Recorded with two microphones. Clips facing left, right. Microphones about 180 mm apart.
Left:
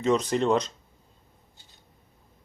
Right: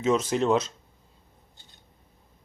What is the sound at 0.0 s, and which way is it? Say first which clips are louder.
Speech: even; 5° right (ahead or behind).